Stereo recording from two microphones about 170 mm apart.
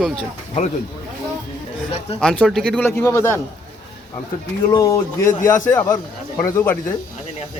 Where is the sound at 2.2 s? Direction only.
5° left (ahead or behind).